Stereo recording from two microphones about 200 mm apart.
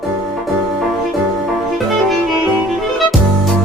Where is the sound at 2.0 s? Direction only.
Centre (ahead or behind).